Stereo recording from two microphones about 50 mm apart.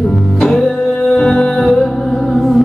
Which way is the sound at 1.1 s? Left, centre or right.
Centre.